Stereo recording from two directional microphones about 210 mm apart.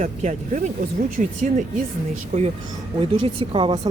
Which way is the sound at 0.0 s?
35° right (ahead or behind).